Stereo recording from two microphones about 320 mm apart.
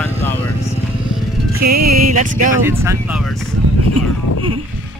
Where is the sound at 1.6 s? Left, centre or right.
Right.